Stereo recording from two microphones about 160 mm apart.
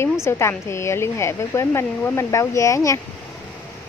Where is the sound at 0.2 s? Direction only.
15° left (ahead or behind).